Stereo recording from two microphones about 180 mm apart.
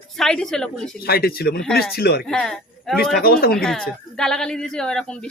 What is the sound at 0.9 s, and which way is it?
Speech, 55° left (ahead or behind).